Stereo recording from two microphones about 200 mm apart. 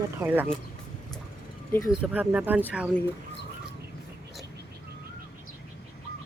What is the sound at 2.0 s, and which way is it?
Speech, 5° right (ahead or behind).